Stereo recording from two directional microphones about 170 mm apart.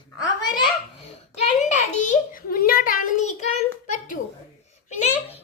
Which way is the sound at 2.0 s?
55° left (ahead or behind).